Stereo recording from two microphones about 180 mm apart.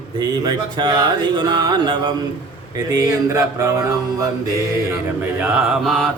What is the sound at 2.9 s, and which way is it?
Mantra, 15° right (ahead or behind).